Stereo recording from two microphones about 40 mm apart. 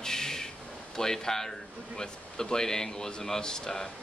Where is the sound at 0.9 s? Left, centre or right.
Centre.